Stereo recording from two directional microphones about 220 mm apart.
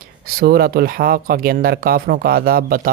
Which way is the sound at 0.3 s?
45° right (ahead or behind).